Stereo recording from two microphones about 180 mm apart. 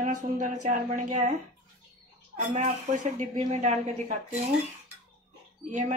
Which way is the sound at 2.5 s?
40° right (ahead or behind).